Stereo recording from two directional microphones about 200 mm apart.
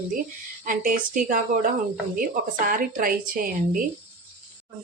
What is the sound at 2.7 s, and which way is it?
A woman's voice, 45° right (ahead or behind).